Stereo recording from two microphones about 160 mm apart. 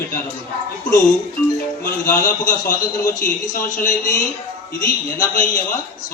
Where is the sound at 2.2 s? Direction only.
55° left (ahead or behind).